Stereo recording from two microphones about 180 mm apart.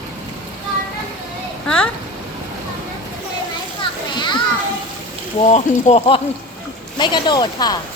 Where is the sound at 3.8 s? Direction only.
25° left (ahead or behind).